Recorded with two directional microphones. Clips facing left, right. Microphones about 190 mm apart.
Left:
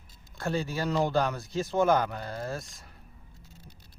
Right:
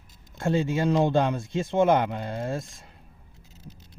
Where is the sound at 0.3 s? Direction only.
25° right (ahead or behind).